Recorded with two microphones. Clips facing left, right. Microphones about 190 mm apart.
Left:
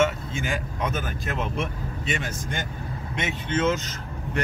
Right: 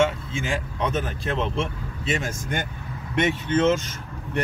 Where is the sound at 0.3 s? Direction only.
25° right (ahead or behind).